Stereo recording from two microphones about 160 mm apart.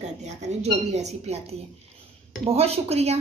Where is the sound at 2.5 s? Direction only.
40° right (ahead or behind).